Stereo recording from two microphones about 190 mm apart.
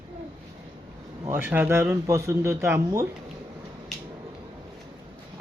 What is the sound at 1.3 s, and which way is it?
Speech, 10° right (ahead or behind).